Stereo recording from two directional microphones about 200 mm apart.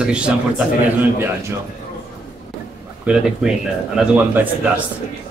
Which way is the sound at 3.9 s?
10° right (ahead or behind).